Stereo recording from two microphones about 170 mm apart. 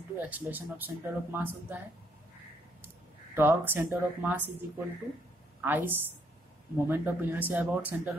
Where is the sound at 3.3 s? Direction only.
10° right (ahead or behind).